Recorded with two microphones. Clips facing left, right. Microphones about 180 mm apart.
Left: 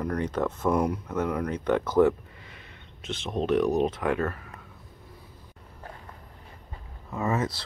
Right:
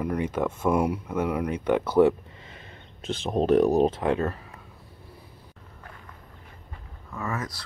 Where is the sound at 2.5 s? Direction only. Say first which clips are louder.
Right 3 dB; 35° right (ahead or behind).